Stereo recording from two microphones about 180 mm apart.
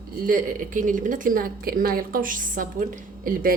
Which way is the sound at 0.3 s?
50° right (ahead or behind).